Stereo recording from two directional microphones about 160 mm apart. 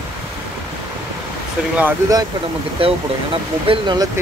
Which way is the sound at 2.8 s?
35° right (ahead or behind).